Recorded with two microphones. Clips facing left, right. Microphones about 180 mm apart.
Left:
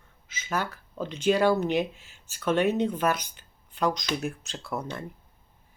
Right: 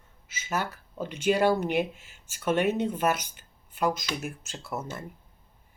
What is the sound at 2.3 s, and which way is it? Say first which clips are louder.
Speech: left 1 dB; 10° right (ahead or behind).